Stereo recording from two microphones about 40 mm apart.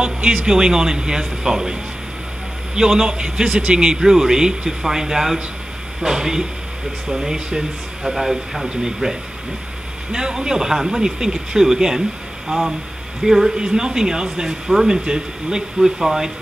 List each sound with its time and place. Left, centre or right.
0.4 s a man's voice: right
10.1 s a man's voice: centre